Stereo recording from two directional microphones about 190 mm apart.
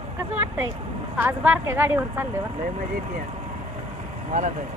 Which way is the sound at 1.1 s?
10° right (ahead or behind).